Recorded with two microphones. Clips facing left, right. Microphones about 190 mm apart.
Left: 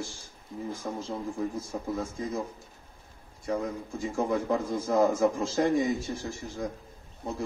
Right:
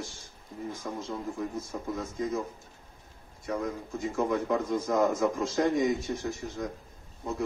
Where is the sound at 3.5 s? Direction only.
30° left (ahead or behind).